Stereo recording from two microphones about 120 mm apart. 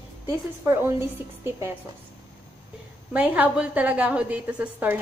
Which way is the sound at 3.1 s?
15° right (ahead or behind).